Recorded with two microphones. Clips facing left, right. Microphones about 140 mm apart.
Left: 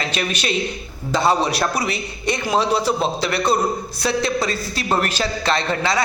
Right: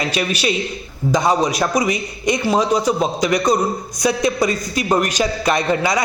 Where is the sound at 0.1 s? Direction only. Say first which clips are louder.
Right 3 dB; 10° right (ahead or behind).